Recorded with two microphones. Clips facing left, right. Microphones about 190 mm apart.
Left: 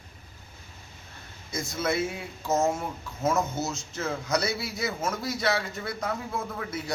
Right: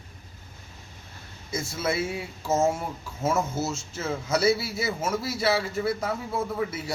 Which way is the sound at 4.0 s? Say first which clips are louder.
Right 2 dB; 5° right (ahead or behind).